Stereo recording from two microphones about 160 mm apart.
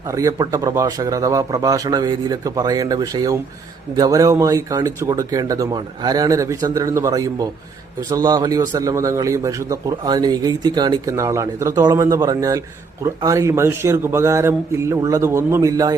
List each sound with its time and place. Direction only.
0.1 s a man's voice: 20° right (ahead or behind)